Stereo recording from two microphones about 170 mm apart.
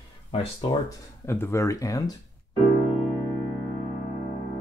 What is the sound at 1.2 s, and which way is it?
Speech, 15° left (ahead or behind).